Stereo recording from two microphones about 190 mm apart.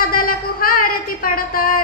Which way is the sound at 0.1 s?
50° left (ahead or behind).